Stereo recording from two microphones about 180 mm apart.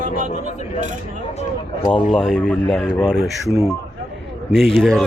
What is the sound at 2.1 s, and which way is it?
Speech, 5° left (ahead or behind).